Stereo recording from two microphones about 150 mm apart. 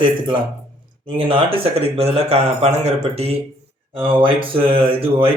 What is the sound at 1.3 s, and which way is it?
Speech, 40° right (ahead or behind).